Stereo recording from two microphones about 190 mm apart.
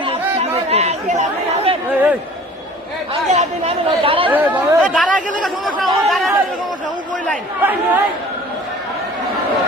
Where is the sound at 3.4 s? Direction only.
30° right (ahead or behind).